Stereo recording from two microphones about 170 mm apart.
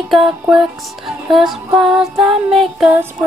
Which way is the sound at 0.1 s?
5° right (ahead or behind).